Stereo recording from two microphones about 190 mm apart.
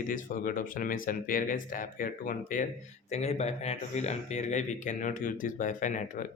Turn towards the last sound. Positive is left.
turn(degrees=40)  # may be behind; listen again after turning